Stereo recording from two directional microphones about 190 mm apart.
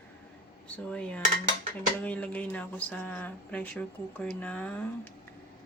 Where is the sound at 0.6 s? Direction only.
5° left (ahead or behind).